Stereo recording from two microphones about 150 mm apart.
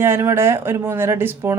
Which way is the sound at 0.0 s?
15° right (ahead or behind).